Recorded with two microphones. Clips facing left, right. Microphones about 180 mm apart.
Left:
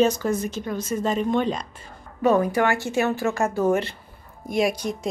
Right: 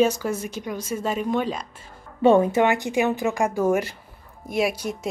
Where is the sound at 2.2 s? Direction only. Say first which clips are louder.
Right 3 dB; 25° right (ahead or behind).